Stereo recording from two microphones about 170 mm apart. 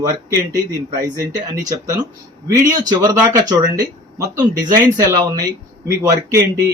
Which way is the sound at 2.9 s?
25° right (ahead or behind).